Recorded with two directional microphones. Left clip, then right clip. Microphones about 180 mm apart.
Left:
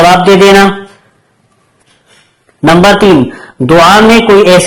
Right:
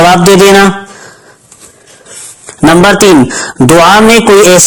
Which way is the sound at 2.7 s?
50° right (ahead or behind).